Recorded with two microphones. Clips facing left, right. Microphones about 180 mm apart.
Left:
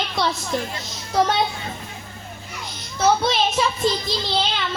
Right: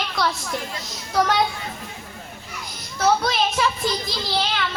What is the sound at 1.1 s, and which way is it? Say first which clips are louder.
Speech: left 1 dB; 25° left (ahead or behind).